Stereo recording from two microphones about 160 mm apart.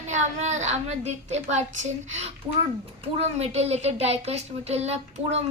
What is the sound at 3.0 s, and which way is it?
A woman's voice, 40° right (ahead or behind).